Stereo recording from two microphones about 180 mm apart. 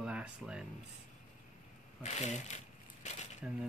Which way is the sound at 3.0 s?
40° left (ahead or behind).